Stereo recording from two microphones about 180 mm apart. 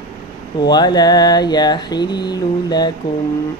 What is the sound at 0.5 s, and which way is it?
Mantra, 25° left (ahead or behind).